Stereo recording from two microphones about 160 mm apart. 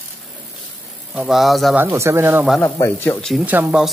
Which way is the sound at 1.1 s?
5° right (ahead or behind).